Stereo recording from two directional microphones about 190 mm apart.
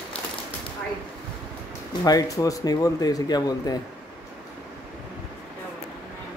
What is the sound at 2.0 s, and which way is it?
Speech, 20° left (ahead or behind).